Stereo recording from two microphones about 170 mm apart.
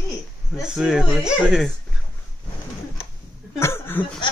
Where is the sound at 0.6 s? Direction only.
5° right (ahead or behind).